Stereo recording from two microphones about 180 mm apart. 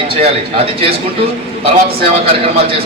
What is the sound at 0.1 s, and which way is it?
A man's voice, 30° right (ahead or behind).